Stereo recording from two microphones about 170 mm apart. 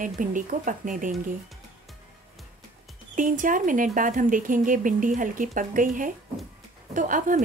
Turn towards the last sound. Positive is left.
turn(degrees=-50)  # may be behind; listen again after turning